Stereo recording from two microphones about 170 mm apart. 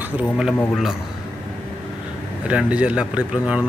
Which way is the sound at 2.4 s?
5° right (ahead or behind).